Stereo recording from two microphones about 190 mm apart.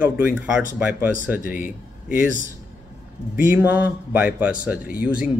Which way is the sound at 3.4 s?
10° right (ahead or behind).